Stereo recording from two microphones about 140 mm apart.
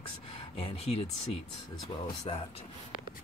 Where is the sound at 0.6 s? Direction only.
45° left (ahead or behind).